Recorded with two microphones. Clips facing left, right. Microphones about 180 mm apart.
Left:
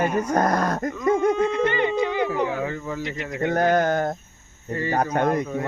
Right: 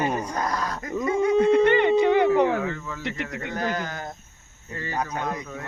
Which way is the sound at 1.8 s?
60° right (ahead or behind).